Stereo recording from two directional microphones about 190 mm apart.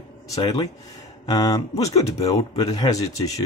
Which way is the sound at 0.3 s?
20° left (ahead or behind).